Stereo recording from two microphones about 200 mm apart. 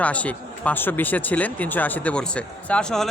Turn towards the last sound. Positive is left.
turn(degrees=5)  # may be behind; listen again after turning